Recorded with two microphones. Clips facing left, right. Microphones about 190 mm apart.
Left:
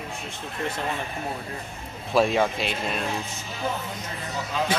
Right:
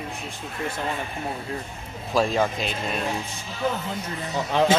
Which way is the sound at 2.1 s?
Centre (ahead or behind).